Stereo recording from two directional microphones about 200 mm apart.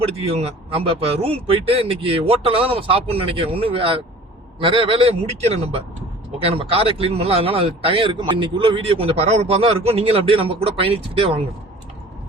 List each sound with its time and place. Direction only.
0.0 s speech: 30° right (ahead or behind)